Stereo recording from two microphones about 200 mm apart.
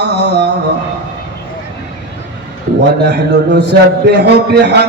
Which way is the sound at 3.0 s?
55° right (ahead or behind).